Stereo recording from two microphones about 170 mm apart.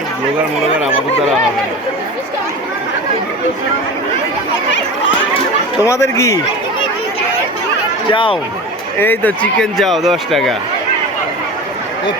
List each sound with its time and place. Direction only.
5.8 s speech: 15° left (ahead or behind)
8.1 s speech: 30° left (ahead or behind)
9.0 s speech: 10° left (ahead or behind)